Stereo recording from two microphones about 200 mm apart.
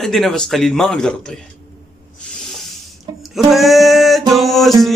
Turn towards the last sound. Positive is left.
turn(degrees=0)  # may be behind; listen again after turning